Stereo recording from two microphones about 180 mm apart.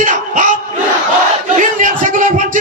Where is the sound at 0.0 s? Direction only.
45° right (ahead or behind).